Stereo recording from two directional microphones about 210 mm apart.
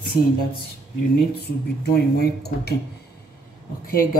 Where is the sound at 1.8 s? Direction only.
50° left (ahead or behind).